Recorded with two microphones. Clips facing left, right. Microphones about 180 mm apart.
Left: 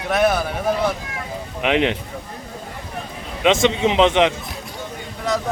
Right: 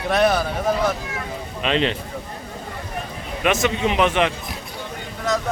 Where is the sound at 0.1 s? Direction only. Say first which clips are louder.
Even; 5° left (ahead or behind).